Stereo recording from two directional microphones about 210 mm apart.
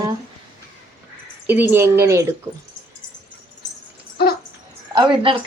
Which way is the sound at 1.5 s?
10° right (ahead or behind).